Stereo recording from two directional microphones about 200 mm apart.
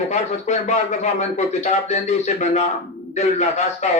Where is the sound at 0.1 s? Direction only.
35° left (ahead or behind).